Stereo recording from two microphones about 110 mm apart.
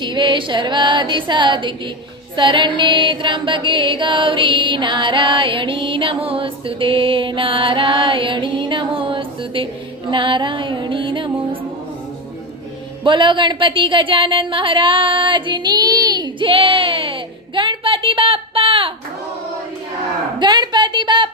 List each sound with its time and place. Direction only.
0.0 s mantra: 45° right (ahead or behind)
13.1 s speech: 45° right (ahead or behind)
20.4 s a woman's voice: 40° right (ahead or behind)